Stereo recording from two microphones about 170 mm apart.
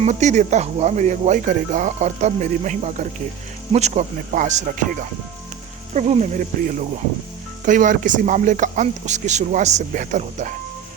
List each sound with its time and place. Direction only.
0.0 s speech: 45° right (ahead or behind)
5.9 s speech: 40° right (ahead or behind)